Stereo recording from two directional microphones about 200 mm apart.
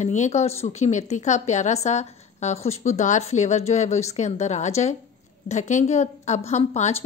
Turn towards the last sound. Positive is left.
turn(degrees=35)  # may be behind; listen again after turning